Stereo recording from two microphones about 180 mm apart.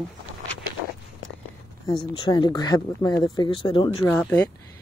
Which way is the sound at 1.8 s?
30° left (ahead or behind).